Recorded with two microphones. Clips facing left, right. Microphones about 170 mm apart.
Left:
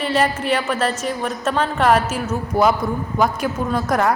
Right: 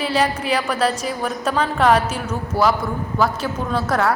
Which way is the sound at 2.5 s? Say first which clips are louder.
Left 2 dB; 20° left (ahead or behind).